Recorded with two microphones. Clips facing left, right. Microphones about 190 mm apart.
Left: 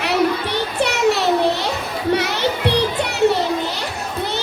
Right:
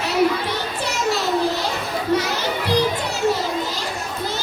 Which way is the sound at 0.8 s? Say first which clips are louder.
Left 7 dB; 65° left (ahead or behind).